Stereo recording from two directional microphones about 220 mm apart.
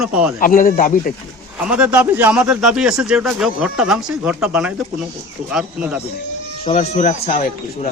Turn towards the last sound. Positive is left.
turn(degrees=35)  # may be behind; listen again after turning